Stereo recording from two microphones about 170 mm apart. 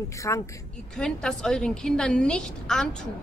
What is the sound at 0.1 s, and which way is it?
Speech, 20° left (ahead or behind).